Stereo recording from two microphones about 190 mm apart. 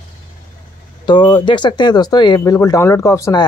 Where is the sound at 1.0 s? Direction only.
25° left (ahead or behind).